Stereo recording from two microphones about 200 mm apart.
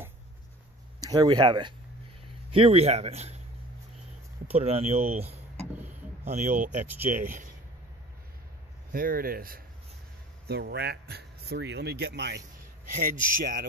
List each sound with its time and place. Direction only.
1.0 s speech: 20° right (ahead or behind)
4.5 s speech: 30° right (ahead or behind)
6.2 s speech: 35° right (ahead or behind)
8.9 s a man's voice: 45° right (ahead or behind)
12.9 s a man's voice: 40° right (ahead or behind)